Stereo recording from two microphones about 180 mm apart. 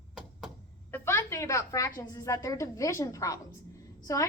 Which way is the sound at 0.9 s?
15° left (ahead or behind).